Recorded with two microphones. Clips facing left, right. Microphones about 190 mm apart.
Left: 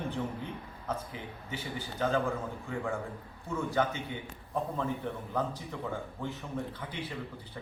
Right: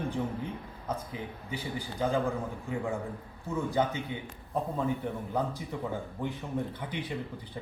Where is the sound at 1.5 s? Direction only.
15° right (ahead or behind).